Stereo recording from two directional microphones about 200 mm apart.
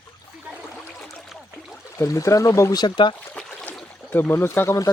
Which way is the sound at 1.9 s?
15° left (ahead or behind).